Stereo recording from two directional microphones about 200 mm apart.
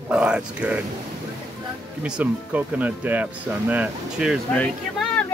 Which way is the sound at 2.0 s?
5° right (ahead or behind).